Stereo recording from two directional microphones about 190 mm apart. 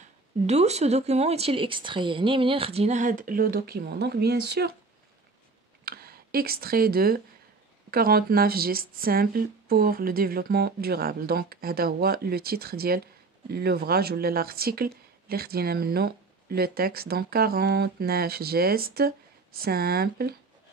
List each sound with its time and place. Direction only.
0.0 s speech: 35° right (ahead or behind); by 4.7 s 60° right (ahead or behind)
5.9 s speech: 55° right (ahead or behind)